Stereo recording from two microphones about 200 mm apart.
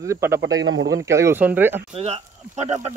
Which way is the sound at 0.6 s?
65° right (ahead or behind).